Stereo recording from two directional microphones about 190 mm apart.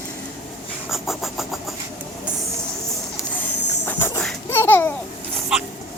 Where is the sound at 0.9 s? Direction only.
Centre (ahead or behind).